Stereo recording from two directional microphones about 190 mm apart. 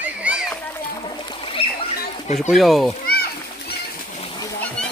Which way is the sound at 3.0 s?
55° left (ahead or behind).